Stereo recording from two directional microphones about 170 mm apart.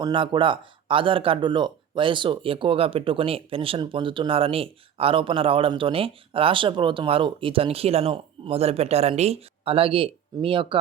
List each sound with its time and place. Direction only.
0.0 s speech: 30° right (ahead or behind)